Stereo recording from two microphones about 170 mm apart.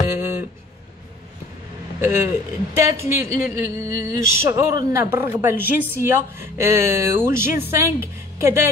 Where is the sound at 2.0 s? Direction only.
15° right (ahead or behind).